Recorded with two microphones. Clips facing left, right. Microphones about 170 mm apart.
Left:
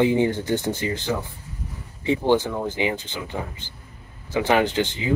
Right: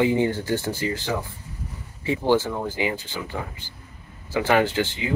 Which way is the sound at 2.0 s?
20° left (ahead or behind).